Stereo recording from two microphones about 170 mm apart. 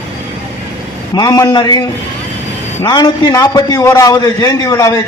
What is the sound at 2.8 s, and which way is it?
A man's voice, 25° left (ahead or behind).